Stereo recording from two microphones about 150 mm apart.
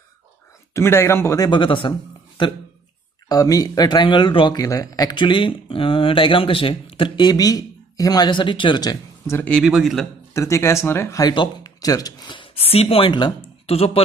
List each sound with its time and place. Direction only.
0.7 s speech: 15° left (ahead or behind)
9.3 s speech: 5° left (ahead or behind)
10.3 s speech: 20° left (ahead or behind); by 14.0 s 40° left (ahead or behind)